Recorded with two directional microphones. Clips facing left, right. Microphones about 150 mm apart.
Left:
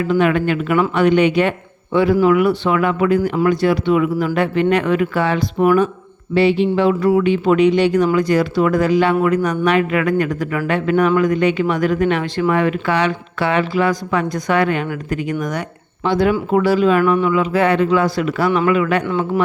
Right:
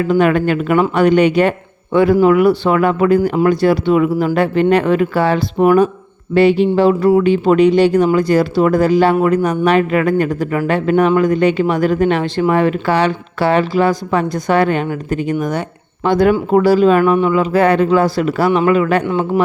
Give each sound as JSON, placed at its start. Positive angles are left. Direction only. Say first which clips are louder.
{"t": 0.0, "sound": "speech", "louder": "right 3 dB", "side_deg": -45}
{"t": 16.0, "sound": "speech", "louder": "right 4 dB", "side_deg": -50}